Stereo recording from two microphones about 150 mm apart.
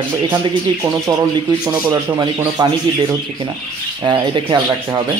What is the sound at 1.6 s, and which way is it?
Speech, 25° right (ahead or behind).